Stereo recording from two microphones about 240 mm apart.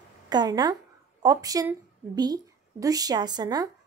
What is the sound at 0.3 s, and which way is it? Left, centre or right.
A woman's voice, centre.